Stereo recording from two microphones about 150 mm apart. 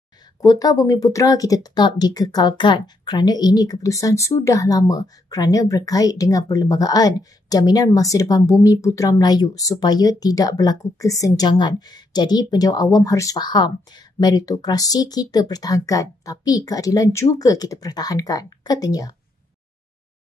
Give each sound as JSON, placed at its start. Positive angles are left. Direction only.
{"t": 0.4, "sound": "speech", "side_deg": 25}